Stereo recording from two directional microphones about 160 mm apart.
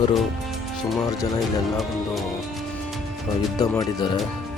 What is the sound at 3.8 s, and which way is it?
Speech, 30° left (ahead or behind).